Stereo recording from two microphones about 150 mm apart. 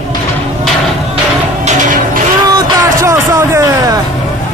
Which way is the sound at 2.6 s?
20° right (ahead or behind).